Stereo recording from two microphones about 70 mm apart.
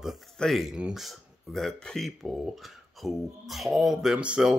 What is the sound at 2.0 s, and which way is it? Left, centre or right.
Speech, centre.